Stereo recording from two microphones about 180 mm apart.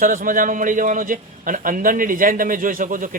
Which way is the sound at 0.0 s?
50° right (ahead or behind).